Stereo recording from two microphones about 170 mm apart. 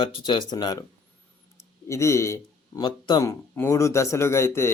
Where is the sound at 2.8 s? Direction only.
25° left (ahead or behind).